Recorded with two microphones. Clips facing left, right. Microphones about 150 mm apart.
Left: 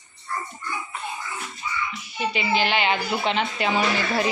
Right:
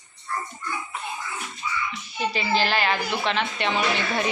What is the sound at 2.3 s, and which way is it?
A child's voice, 15° left (ahead or behind).